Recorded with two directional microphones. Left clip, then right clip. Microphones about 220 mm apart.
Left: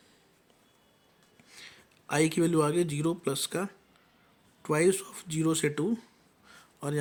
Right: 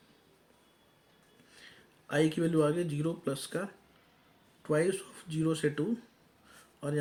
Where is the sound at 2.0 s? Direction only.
50° left (ahead or behind).